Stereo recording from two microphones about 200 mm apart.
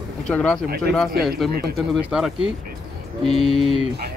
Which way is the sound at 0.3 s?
5° left (ahead or behind).